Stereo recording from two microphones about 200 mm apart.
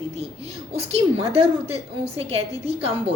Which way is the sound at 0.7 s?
30° right (ahead or behind).